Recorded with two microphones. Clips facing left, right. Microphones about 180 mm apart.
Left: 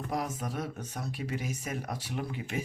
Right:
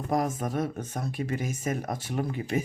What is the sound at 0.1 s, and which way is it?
Speech, 50° right (ahead or behind).